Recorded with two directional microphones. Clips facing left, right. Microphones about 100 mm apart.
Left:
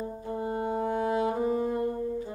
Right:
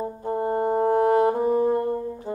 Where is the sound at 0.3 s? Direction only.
45° right (ahead or behind).